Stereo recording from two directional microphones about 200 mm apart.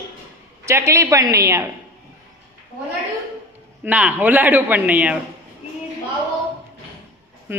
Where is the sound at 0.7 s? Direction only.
15° right (ahead or behind).